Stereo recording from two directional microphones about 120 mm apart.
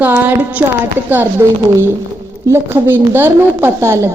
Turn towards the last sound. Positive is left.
turn(degrees=-20)  # may be behind; listen again after turning